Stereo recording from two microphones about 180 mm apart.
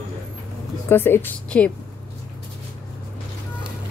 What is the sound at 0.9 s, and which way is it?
Speech, 10° left (ahead or behind).